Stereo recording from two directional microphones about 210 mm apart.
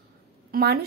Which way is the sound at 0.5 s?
50° right (ahead or behind).